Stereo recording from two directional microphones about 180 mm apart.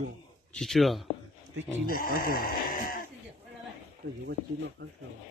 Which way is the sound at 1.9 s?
55° left (ahead or behind).